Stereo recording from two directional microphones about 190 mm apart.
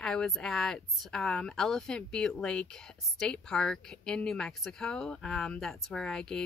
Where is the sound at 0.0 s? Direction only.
5° left (ahead or behind).